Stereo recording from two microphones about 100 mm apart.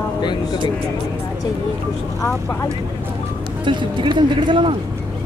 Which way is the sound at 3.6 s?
50° right (ahead or behind).